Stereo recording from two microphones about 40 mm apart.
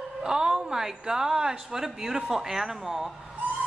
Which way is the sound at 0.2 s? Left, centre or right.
Centre.